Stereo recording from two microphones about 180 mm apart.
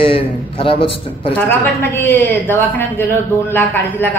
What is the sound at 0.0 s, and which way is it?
A man's voice, 30° left (ahead or behind).